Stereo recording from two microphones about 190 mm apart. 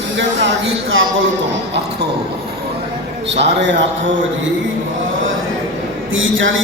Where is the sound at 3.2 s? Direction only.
65° right (ahead or behind).